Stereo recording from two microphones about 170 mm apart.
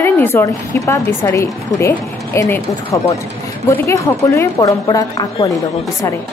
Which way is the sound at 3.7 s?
20° left (ahead or behind).